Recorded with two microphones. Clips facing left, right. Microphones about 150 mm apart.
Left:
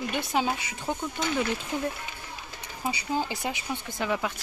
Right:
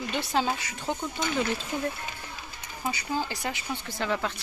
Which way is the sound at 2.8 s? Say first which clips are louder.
Left 1 dB; 20° left (ahead or behind).